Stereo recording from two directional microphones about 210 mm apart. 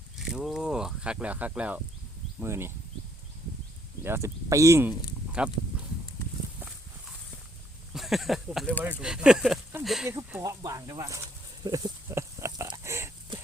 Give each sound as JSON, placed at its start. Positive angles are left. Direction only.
{"t": 0.3, "sound": "speech", "side_deg": 0}
{"t": 4.0, "sound": "speech", "side_deg": -10}
{"t": 7.9, "sound": "speech", "side_deg": 0}
{"t": 10.1, "sound": "a sound", "side_deg": -15}